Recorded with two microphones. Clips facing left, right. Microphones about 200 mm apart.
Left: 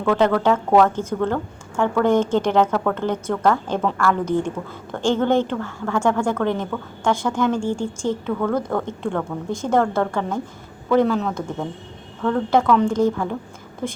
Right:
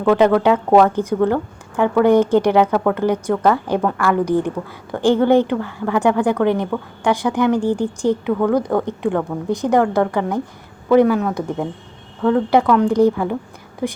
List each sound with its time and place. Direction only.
0.0 s a woman's voice: 15° right (ahead or behind)